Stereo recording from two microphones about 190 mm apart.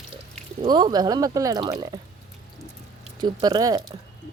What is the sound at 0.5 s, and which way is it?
Speech, 25° right (ahead or behind).